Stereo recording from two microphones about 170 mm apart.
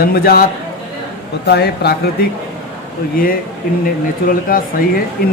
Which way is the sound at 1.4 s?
75° left (ahead or behind).